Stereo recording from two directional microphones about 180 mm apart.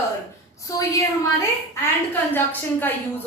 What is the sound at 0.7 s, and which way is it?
Speech, 20° left (ahead or behind).